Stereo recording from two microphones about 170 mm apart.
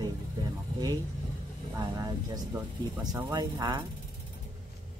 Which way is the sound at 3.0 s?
20° right (ahead or behind).